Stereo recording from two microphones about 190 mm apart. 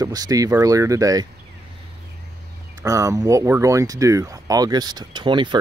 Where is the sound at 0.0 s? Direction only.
20° right (ahead or behind).